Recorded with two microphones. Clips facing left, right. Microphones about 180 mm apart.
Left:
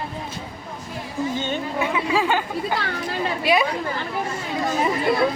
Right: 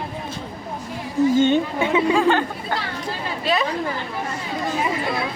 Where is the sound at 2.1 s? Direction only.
5° left (ahead or behind).